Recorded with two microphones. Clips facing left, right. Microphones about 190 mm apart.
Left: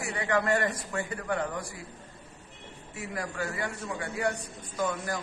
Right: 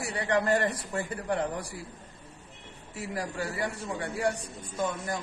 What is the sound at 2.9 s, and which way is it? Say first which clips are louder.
A man's voice: right 1 dB; 35° right (ahead or behind).